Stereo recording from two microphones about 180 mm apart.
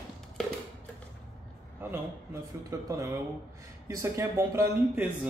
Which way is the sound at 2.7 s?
20° right (ahead or behind).